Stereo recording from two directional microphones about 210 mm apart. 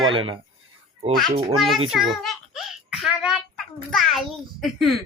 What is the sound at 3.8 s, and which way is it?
A child's voice, centre (ahead or behind).